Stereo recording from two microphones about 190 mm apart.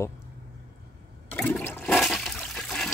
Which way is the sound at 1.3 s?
5° left (ahead or behind).